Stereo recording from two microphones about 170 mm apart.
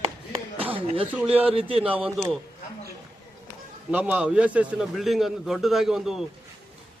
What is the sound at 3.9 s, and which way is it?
A man's voice, 10° right (ahead or behind).